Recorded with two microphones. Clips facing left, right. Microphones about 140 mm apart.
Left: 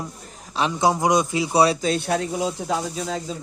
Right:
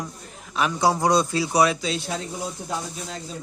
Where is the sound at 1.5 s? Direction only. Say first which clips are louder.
Left 2 dB; 30° left (ahead or behind).